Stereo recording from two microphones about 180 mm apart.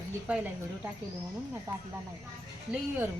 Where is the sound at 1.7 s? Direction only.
15° right (ahead or behind).